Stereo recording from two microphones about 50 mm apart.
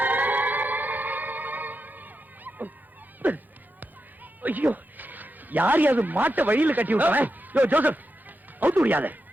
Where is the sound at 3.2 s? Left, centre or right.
Right.